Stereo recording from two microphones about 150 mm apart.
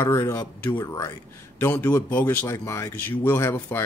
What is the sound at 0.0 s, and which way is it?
Speech, 15° left (ahead or behind).